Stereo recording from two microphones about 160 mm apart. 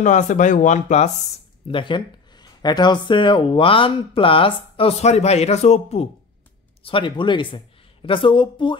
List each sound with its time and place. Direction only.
0.0 s speech: 50° left (ahead or behind)
1.7 s speech: 30° left (ahead or behind)
6.8 s speech: 30° left (ahead or behind)